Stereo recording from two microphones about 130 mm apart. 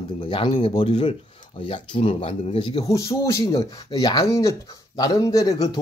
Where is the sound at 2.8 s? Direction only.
25° left (ahead or behind).